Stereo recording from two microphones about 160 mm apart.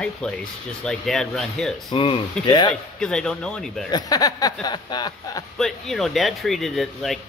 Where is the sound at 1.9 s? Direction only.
35° left (ahead or behind).